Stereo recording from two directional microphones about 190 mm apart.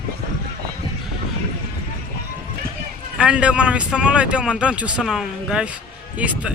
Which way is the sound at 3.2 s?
5° right (ahead or behind).